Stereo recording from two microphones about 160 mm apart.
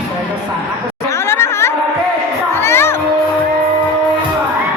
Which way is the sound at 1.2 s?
15° left (ahead or behind).